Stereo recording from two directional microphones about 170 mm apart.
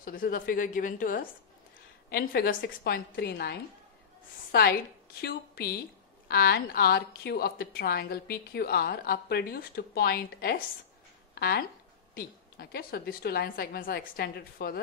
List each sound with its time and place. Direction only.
0.0 s a woman's voice: 55° left (ahead or behind)